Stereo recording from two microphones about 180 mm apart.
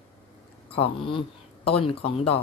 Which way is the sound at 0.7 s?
30° left (ahead or behind).